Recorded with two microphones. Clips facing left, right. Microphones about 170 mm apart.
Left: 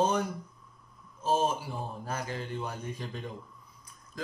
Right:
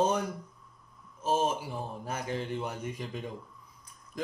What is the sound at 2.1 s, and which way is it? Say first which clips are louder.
Speech: right 3 dB; 20° right (ahead or behind).